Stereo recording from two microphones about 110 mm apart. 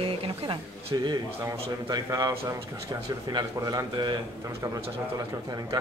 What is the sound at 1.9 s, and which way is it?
Speech, 35° right (ahead or behind).